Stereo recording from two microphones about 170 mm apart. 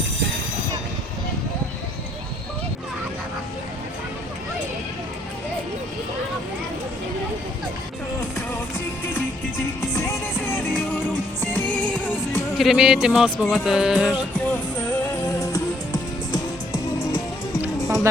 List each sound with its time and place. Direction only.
9.9 s music: 15° left (ahead or behind)
12.5 s speech: centre (ahead or behind)
16.3 s music: 20° left (ahead or behind)
17.6 s music: centre (ahead or behind)